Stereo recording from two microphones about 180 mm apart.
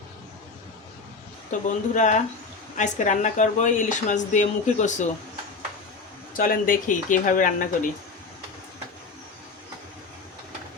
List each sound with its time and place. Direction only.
1.5 s speech: 45° left (ahead or behind)
6.3 s speech: 50° left (ahead or behind)